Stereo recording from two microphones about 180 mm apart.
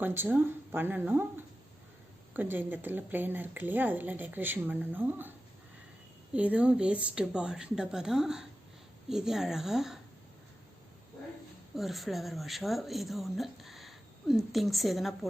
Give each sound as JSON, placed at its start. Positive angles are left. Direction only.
{"t": 0.0, "sound": "speech", "side_deg": -10}
{"t": 6.3, "sound": "speech", "side_deg": -5}
{"t": 11.8, "sound": "speech", "side_deg": 0}